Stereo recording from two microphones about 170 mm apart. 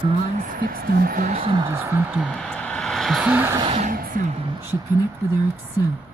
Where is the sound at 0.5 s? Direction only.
55° right (ahead or behind).